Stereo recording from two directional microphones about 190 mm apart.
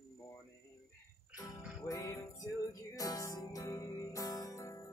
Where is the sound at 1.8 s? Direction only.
20° left (ahead or behind).